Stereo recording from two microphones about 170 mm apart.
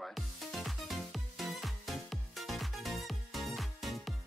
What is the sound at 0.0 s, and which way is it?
Music, centre (ahead or behind).